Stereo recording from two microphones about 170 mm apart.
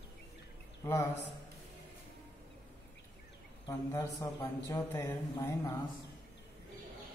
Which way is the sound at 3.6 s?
15° left (ahead or behind).